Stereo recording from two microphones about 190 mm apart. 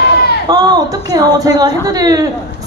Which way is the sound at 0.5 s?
20° right (ahead or behind).